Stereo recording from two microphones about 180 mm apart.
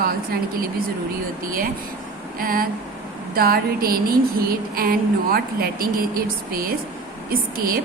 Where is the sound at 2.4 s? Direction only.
55° right (ahead or behind).